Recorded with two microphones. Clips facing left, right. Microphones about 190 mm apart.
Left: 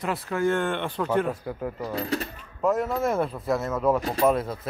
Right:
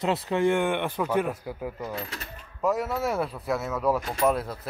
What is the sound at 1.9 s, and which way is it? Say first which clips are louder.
Speech: left 7 dB; 35° left (ahead or behind).